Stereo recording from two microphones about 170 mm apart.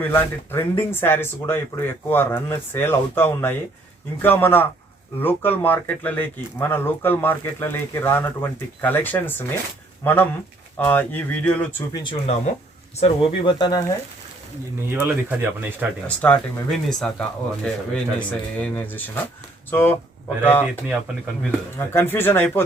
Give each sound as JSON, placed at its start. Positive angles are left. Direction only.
{"t": 0.0, "sound": "speech", "side_deg": 15}
{"t": 12.0, "sound": "speech", "side_deg": 35}
{"t": 14.8, "sound": "speech", "side_deg": -10}
{"t": 16.0, "sound": "speech", "side_deg": 10}
{"t": 21.8, "sound": "speech", "side_deg": 15}